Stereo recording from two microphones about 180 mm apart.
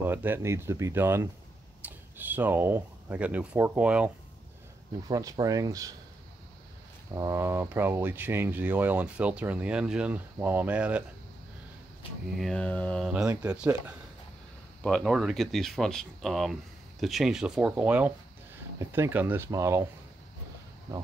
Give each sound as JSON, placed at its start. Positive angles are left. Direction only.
{"t": 0.0, "sound": "speech", "side_deg": -10}
{"t": 5.0, "sound": "speech", "side_deg": -20}
{"t": 7.2, "sound": "speech", "side_deg": -15}
{"t": 12.4, "sound": "speech", "side_deg": 5}
{"t": 13.1, "sound": "speech", "side_deg": -10}
{"t": 14.8, "sound": "speech", "side_deg": 5}